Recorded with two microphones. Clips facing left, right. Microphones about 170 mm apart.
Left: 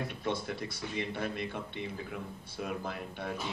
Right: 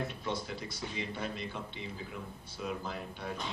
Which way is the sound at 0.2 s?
55° left (ahead or behind).